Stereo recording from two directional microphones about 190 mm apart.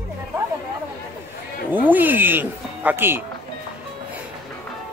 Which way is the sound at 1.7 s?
10° right (ahead or behind).